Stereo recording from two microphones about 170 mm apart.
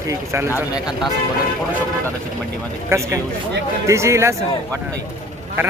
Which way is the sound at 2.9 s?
15° right (ahead or behind).